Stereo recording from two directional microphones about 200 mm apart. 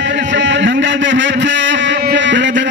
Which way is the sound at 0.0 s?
65° right (ahead or behind).